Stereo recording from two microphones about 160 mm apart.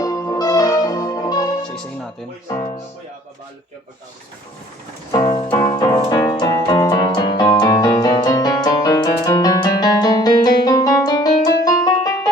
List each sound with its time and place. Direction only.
0.0 s music: 20° left (ahead or behind)
2.5 s speech: 20° left (ahead or behind)
5.1 s music: 25° left (ahead or behind)
6.4 s keyboard: 25° left (ahead or behind)